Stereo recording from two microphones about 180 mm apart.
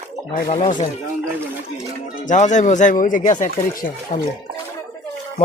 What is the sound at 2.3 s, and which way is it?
Speech, 45° left (ahead or behind).